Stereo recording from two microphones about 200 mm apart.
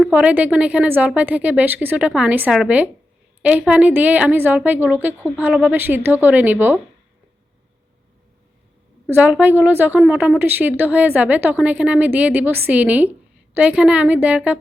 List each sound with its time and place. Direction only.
0.0 s a woman's voice: 5° right (ahead or behind)
9.1 s a woman's voice: 10° right (ahead or behind)